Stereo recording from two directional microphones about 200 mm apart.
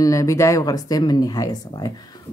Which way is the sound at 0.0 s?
15° left (ahead or behind).